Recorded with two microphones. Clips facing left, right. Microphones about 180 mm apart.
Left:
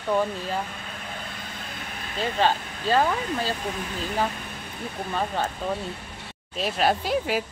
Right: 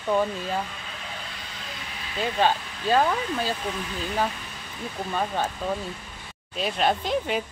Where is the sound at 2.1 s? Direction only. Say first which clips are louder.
Even; 10° right (ahead or behind).